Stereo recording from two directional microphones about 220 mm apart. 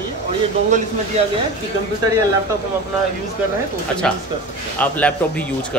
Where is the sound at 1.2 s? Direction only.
30° right (ahead or behind).